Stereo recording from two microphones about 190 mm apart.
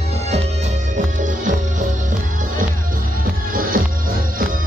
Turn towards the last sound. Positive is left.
turn(degrees=-45)  # may be behind; listen again after turning